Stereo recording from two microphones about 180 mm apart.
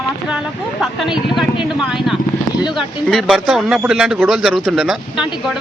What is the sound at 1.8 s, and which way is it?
Speech, 5° right (ahead or behind).